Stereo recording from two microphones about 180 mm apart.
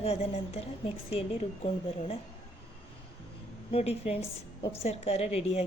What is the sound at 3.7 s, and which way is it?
A woman's voice, 35° left (ahead or behind).